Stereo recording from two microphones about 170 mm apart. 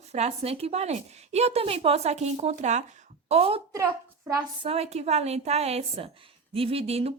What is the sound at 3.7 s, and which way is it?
Speech, 20° right (ahead or behind).